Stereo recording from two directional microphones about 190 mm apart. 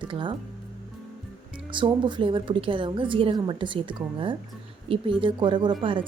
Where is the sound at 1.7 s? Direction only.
25° right (ahead or behind).